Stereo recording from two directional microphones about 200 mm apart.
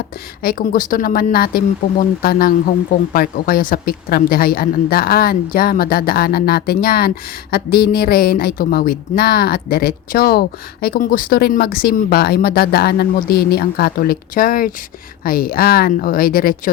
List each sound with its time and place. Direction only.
0.4 s a woman's voice: 45° left (ahead or behind)